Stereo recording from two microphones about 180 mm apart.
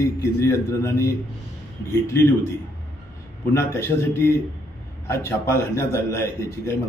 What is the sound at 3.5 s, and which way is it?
A man's voice, 15° left (ahead or behind).